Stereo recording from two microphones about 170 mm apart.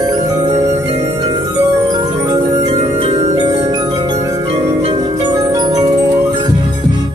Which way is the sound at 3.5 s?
35° right (ahead or behind).